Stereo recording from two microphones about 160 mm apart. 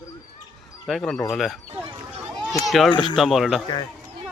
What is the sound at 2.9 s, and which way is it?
Speech, 30° left (ahead or behind).